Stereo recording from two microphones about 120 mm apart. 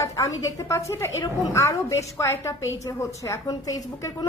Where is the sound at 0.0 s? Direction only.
25° left (ahead or behind).